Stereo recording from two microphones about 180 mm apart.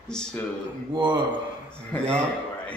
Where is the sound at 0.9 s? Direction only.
25° right (ahead or behind).